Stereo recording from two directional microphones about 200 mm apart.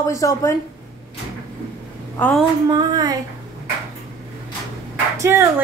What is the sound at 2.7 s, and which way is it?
Child singing, 20° right (ahead or behind).